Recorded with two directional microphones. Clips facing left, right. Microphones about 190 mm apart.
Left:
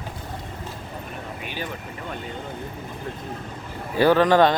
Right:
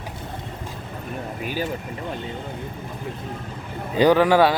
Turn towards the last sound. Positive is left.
turn(degrees=-10)  # may be behind; listen again after turning